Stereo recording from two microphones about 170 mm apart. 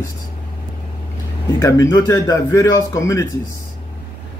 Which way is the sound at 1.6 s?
20° left (ahead or behind).